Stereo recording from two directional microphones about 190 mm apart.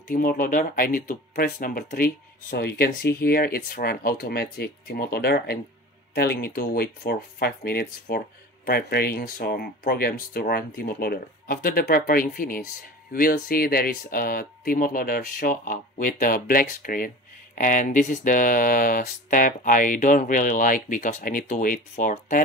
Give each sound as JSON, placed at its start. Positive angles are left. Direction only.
{"t": 0.1, "sound": "speech", "side_deg": 50}